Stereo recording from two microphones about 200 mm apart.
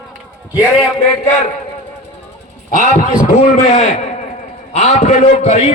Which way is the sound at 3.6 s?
35° left (ahead or behind).